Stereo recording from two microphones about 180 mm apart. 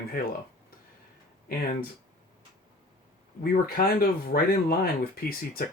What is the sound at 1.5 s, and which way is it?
Speech, 55° left (ahead or behind).